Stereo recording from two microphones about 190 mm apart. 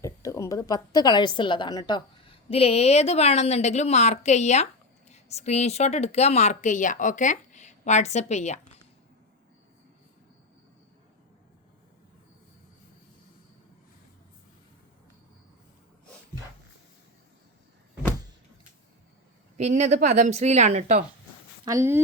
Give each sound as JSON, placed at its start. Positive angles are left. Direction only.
{"t": 0.0, "sound": "a woman's voice", "side_deg": 15}
{"t": 19.5, "sound": "a woman's voice", "side_deg": -35}
{"t": 21.6, "sound": "speech", "side_deg": -15}